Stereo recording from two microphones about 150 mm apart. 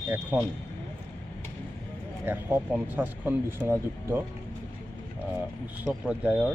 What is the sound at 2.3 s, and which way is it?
Speech, 15° right (ahead or behind).